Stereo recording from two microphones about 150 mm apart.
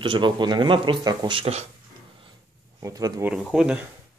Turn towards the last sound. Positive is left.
turn(degrees=-5)  # may be behind; listen again after turning